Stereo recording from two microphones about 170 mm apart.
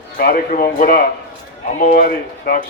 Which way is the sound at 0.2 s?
60° left (ahead or behind).